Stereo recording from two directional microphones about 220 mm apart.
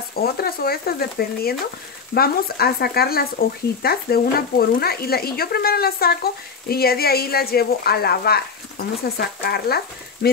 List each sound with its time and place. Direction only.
0.1 s speech: 45° left (ahead or behind)